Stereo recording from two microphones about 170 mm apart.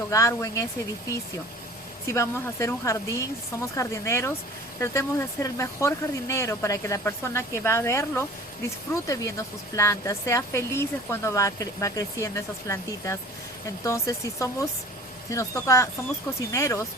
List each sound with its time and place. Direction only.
0.1 s speech: 20° left (ahead or behind)
2.0 s speech: 15° left (ahead or behind)